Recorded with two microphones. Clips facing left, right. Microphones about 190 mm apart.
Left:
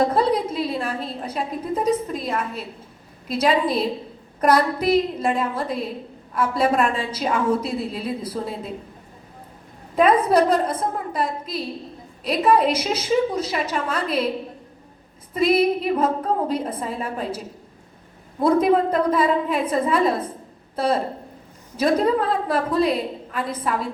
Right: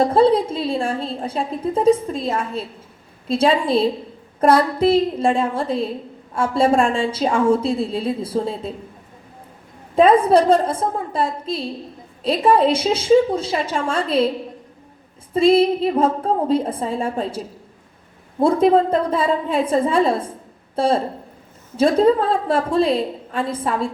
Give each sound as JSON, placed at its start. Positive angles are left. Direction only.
{"t": 0.0, "sound": "a woman's voice", "side_deg": -30}
{"t": 9.9, "sound": "a woman's voice", "side_deg": -30}
{"t": 15.3, "sound": "a woman's voice", "side_deg": -30}